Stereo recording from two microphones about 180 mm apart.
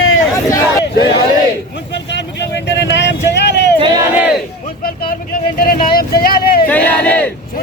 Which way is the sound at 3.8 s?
20° right (ahead or behind).